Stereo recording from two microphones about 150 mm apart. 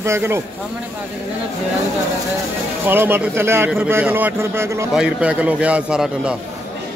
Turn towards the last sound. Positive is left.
turn(degrees=-5)  # may be behind; listen again after turning